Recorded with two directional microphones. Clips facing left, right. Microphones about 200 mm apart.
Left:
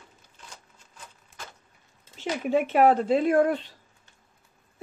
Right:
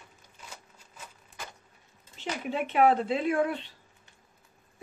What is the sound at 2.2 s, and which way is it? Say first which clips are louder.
Speech: left 7 dB; 45° left (ahead or behind).